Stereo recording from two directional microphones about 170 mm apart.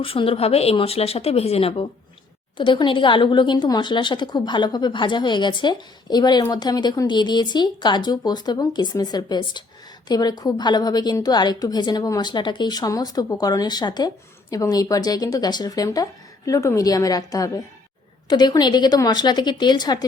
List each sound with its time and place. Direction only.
0.0 s a woman's voice: 35° left (ahead or behind)